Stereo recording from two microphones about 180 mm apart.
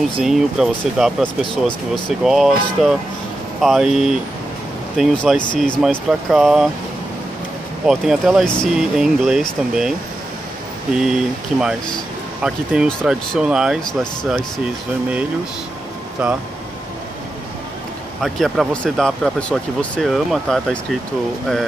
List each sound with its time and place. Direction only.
0.2 s speech: centre (ahead or behind)
1.4 s speech: 25° left (ahead or behind)
2.2 s speech: centre (ahead or behind)
7.8 s speech: 5° right (ahead or behind)
16.2 s speech: 5° right (ahead or behind)
18.2 s speech: centre (ahead or behind)